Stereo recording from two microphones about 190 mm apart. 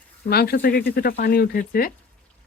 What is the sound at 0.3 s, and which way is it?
Speech, 55° left (ahead or behind).